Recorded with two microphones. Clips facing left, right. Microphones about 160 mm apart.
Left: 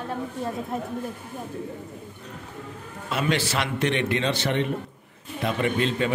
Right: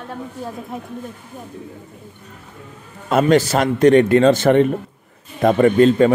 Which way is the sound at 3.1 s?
45° right (ahead or behind).